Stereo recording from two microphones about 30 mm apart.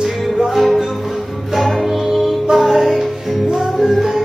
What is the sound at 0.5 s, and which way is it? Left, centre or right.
Music, centre.